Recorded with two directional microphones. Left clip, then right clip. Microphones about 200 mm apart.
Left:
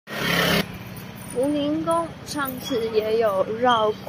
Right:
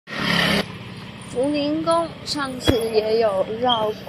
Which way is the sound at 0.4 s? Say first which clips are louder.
Right 1 dB; 30° left (ahead or behind).